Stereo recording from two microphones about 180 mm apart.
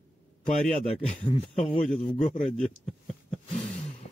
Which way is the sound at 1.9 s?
40° left (ahead or behind).